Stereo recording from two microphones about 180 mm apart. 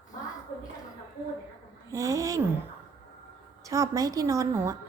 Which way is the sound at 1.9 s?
15° right (ahead or behind).